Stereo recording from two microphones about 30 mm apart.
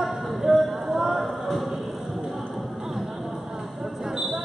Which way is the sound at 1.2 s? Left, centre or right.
Centre.